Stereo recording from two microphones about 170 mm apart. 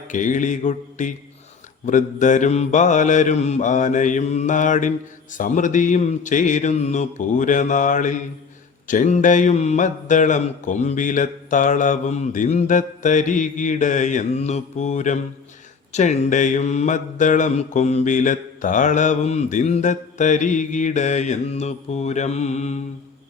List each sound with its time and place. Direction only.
0.1 s mantra: 50° left (ahead or behind)